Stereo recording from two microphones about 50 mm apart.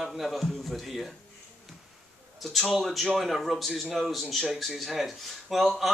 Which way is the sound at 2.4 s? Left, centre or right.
Centre.